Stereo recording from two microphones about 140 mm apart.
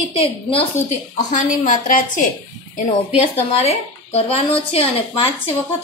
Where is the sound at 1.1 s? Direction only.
70° left (ahead or behind).